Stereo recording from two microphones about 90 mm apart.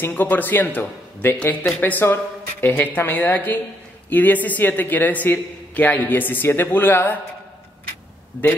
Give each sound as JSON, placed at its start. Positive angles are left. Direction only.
{"t": 0.0, "sound": "a man's voice", "side_deg": 20}